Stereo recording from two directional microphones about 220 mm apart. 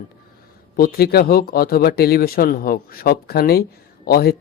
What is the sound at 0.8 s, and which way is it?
Speech, 45° left (ahead or behind).